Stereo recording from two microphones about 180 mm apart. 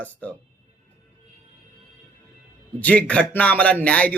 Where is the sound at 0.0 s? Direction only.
10° left (ahead or behind).